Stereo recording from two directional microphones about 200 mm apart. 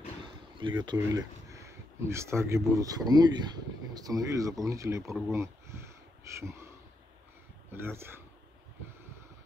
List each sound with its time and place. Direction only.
0.6 s speech: 25° right (ahead or behind)
7.7 s speech: 10° right (ahead or behind)